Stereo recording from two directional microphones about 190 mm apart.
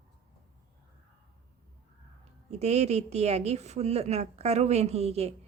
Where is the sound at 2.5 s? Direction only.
35° right (ahead or behind).